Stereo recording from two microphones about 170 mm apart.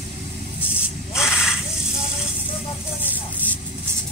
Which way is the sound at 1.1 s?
5° right (ahead or behind).